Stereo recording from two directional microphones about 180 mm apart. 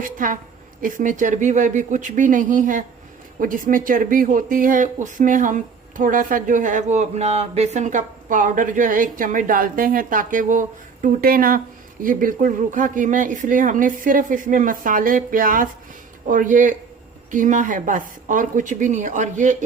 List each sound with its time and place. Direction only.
0.0 s speech: 50° right (ahead or behind)